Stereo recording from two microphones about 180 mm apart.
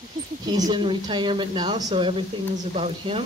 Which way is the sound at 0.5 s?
20° right (ahead or behind).